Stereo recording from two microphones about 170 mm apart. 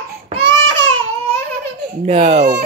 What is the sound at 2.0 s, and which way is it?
Speech, 40° right (ahead or behind).